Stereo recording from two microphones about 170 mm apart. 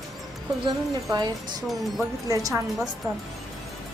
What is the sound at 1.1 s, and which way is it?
A woman's voice, 25° right (ahead or behind).